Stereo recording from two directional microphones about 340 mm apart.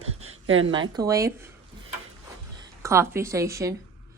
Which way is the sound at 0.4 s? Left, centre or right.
Right.